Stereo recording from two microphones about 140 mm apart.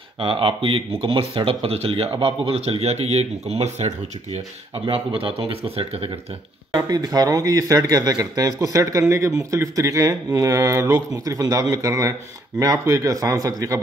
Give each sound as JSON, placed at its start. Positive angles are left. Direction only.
{"t": 0.2, "sound": "speech", "side_deg": -40}
{"t": 4.8, "sound": "speech", "side_deg": -40}
{"t": 6.7, "sound": "speech", "side_deg": -30}